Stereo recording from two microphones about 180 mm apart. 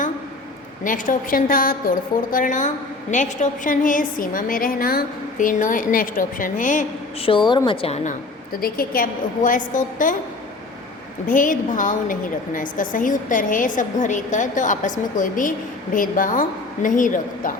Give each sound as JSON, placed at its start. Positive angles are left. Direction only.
{"t": 0.9, "sound": "a woman's voice", "side_deg": 50}
{"t": 7.2, "sound": "a woman's voice", "side_deg": 30}
{"t": 8.6, "sound": "a woman's voice", "side_deg": 55}
{"t": 11.3, "sound": "a woman's voice", "side_deg": 45}